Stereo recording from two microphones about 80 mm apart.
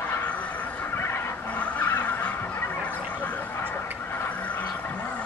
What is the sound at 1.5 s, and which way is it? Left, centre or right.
Vehicle, centre.